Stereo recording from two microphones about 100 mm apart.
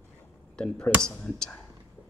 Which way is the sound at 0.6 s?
10° left (ahead or behind).